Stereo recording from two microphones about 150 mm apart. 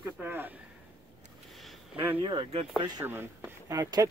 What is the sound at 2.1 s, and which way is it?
Speech, 35° right (ahead or behind).